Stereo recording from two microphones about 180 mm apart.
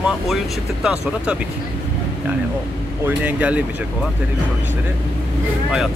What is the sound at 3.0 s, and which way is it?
Speech, 10° right (ahead or behind).